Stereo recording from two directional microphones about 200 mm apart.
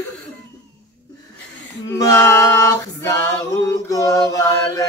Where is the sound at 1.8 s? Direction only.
15° left (ahead or behind).